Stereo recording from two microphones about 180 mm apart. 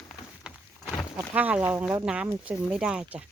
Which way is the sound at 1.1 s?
10° right (ahead or behind).